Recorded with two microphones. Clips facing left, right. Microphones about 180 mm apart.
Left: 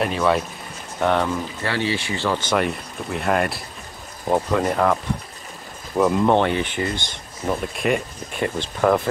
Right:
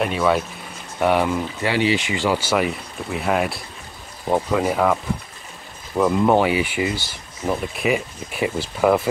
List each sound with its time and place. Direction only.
0.0 s speech: centre (ahead or behind)
5.9 s speech: centre (ahead or behind)